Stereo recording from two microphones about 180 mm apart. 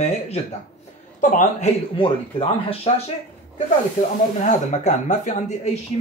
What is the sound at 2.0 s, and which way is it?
Speech, 30° left (ahead or behind).